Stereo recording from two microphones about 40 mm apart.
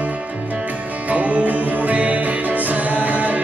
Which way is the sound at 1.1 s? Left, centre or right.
Right.